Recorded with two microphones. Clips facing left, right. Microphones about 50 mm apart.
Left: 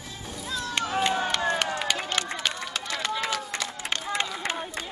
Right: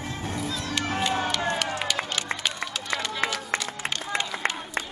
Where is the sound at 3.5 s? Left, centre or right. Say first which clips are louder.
Right 4 dB; right.